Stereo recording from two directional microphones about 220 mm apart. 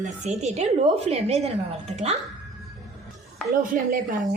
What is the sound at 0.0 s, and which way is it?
Speech, 30° right (ahead or behind).